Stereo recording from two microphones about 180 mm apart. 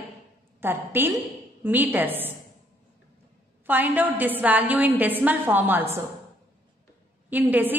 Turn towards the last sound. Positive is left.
turn(degrees=-10)  # may be behind; listen again after turning